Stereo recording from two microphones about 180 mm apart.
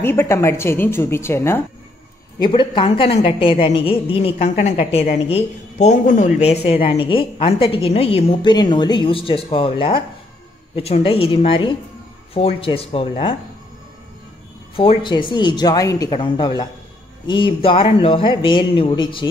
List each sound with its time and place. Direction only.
0.0 s a woman's voice: 15° left (ahead or behind)
2.3 s speech: 25° left (ahead or behind)
14.8 s speech: 30° left (ahead or behind)